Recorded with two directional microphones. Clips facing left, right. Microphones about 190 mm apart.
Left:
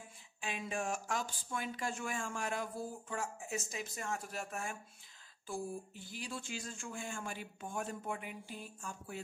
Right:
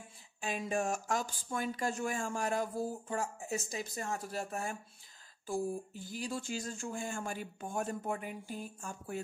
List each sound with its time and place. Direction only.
0.4 s speech: 40° right (ahead or behind)